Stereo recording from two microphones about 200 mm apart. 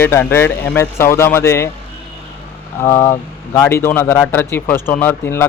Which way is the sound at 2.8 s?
15° left (ahead or behind).